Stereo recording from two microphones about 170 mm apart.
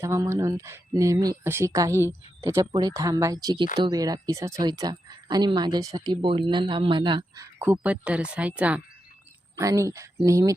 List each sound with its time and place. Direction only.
0.0 s speech: 15° right (ahead or behind)
7.6 s speech: 10° right (ahead or behind)